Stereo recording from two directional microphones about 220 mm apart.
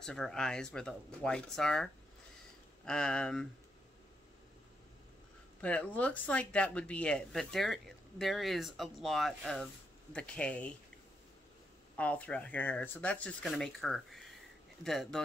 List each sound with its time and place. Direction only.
0.0 s speech: 5° left (ahead or behind)
5.6 s speech: 5° left (ahead or behind)
12.0 s speech: 5° left (ahead or behind)